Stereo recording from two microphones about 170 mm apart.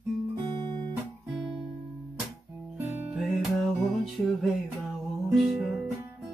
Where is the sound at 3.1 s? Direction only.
Centre (ahead or behind).